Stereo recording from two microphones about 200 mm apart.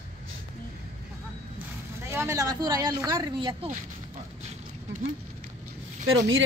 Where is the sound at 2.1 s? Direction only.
15° right (ahead or behind).